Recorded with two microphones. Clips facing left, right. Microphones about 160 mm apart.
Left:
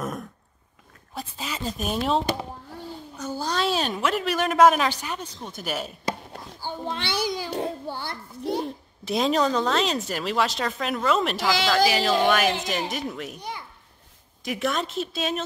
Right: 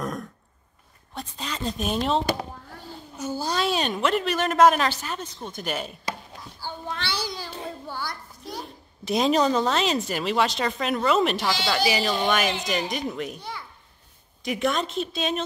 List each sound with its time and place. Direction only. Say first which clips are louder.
0.0 s throat clearing: even; 5° left (ahead or behind)
1.1 s a woman's voice: even; 5° left (ahead or behind)
3.2 s a woman's voice: right 1 dB; 5° right (ahead or behind)
6.6 s a child's voice: left 2 dB; 20° left (ahead or behind)
9.0 s a woman's voice: right 1 dB; centre (ahead or behind)
13.4 s a child's voice: left 1 dB; 20° left (ahead or behind)
14.4 s a woman's voice: right 2 dB; centre (ahead or behind)